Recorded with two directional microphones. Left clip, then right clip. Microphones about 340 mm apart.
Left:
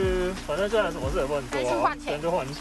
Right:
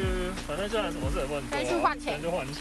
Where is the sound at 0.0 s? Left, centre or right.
Left.